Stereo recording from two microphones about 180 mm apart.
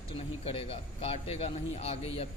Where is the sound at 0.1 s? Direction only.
35° left (ahead or behind).